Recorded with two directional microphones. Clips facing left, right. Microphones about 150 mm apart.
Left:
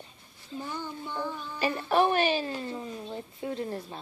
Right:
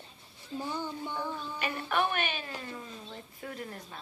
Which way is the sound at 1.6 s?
30° left (ahead or behind).